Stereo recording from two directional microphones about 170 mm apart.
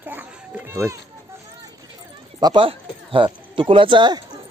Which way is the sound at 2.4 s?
25° right (ahead or behind).